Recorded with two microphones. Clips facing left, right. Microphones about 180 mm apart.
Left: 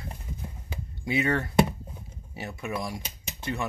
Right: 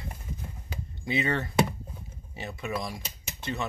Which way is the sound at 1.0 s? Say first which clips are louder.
Left 2 dB; 10° left (ahead or behind).